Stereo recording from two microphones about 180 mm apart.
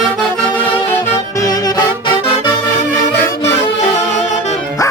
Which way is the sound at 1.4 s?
20° left (ahead or behind).